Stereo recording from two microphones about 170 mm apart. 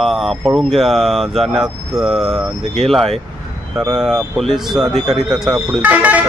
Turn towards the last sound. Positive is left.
turn(degrees=-10)  # may be behind; listen again after turning